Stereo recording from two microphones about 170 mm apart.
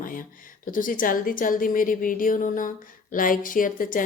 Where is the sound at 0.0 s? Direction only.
55° left (ahead or behind).